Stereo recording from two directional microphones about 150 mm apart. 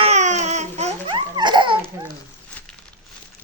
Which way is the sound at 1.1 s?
30° right (ahead or behind).